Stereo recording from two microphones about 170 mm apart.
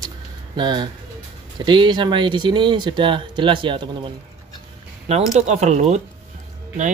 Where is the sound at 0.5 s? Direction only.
25° right (ahead or behind).